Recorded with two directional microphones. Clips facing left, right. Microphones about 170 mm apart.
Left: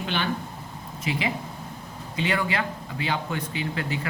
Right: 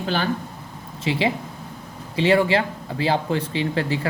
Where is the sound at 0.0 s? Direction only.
40° right (ahead or behind).